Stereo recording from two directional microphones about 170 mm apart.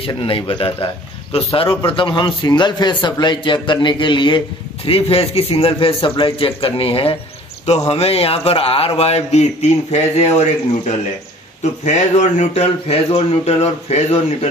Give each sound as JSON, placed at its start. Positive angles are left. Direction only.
{"t": 0.0, "sound": "a man's voice", "side_deg": 30}
{"t": 11.8, "sound": "speech", "side_deg": 45}